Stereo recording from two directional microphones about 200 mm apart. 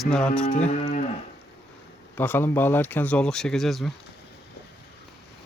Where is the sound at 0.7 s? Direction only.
35° left (ahead or behind).